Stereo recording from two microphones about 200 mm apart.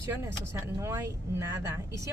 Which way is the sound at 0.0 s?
15° right (ahead or behind).